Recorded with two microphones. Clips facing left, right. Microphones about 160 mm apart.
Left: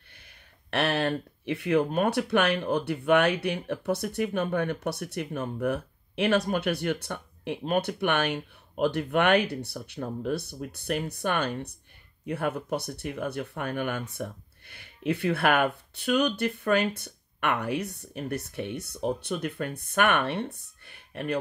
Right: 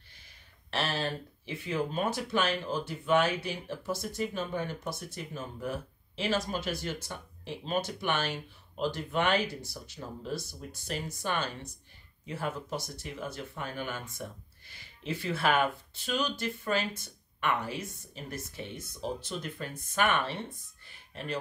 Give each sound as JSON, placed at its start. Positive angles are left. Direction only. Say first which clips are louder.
{"t": 0.7, "sound": "speech", "louder": "left 6 dB", "side_deg": 60}